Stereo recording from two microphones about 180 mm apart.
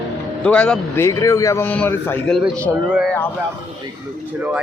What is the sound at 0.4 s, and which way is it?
A man's voice, 5° left (ahead or behind).